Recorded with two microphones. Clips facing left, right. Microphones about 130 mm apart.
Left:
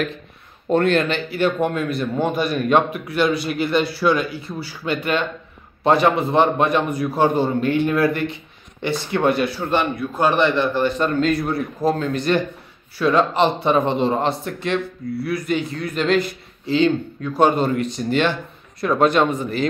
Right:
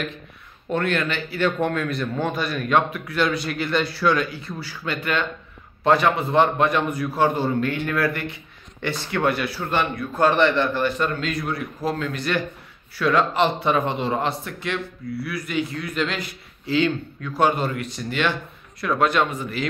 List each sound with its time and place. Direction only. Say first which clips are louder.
0.7 s speech: left 6 dB; 25° left (ahead or behind)
1.4 s a man's voice: left 2 dB; 10° left (ahead or behind)
11.1 s speech: left 7 dB; 35° left (ahead or behind)
15.1 s a man's voice: left 4 dB; 50° left (ahead or behind)
16.6 s speech: left 4 dB; 25° left (ahead or behind)